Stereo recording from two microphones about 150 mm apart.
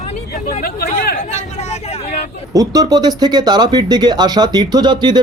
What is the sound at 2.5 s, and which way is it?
Speech, 25° right (ahead or behind).